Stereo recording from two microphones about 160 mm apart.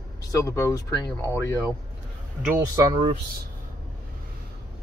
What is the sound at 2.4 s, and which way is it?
Speech, 20° right (ahead or behind).